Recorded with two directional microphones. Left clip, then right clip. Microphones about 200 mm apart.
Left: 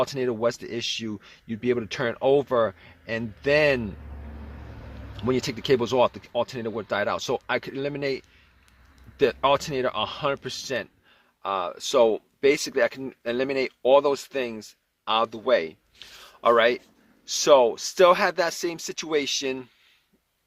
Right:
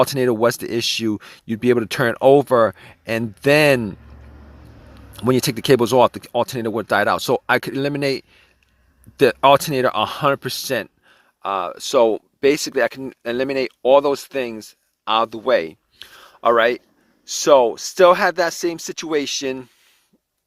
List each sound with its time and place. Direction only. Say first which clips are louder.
0.0 s speech: right 8 dB; 50° right (ahead or behind)
5.1 s speech: right 7 dB; 50° right (ahead or behind)